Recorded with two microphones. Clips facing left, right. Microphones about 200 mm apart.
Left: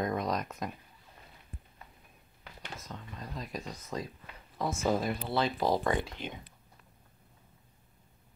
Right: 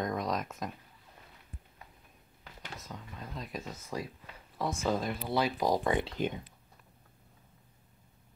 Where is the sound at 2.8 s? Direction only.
Centre (ahead or behind).